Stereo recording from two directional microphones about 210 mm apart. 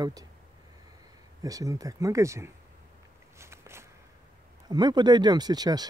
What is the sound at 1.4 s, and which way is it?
Speech, 15° right (ahead or behind).